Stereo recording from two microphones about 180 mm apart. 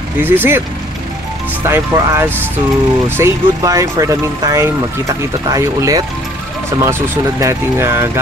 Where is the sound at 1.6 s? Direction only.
15° right (ahead or behind).